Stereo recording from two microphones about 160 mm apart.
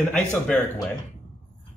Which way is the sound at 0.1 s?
5° left (ahead or behind).